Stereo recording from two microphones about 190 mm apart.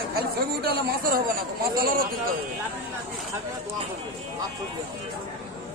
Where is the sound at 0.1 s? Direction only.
55° right (ahead or behind).